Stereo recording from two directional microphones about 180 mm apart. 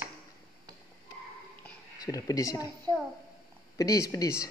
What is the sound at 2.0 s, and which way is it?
Speech, 20° left (ahead or behind).